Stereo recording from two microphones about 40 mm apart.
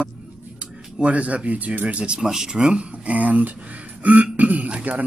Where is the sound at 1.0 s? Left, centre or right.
Right.